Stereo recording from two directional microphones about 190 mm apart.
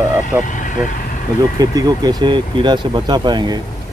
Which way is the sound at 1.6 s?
20° right (ahead or behind).